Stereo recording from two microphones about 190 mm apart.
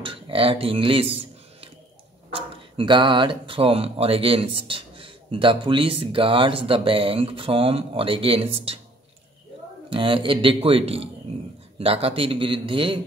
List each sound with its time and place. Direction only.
0.0 s a sound: 30° right (ahead or behind)
2.3 s speech: 25° right (ahead or behind)
9.8 s speech: 25° right (ahead or behind)